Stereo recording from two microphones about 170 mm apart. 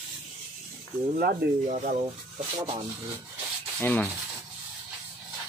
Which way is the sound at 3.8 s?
10° left (ahead or behind).